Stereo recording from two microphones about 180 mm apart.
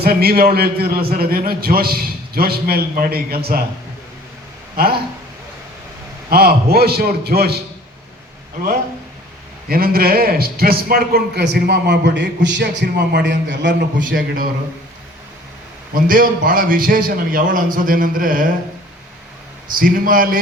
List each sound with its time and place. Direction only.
0.0 s a man's voice: 60° right (ahead or behind)
6.3 s a man's voice: 60° right (ahead or behind)
9.6 s a man's voice: 55° right (ahead or behind); by 13.8 s 75° right (ahead or behind)
14.0 s a man's voice: 50° right (ahead or behind)
16.0 s a man's voice: 50° right (ahead or behind)
19.8 s a man's voice: 50° right (ahead or behind)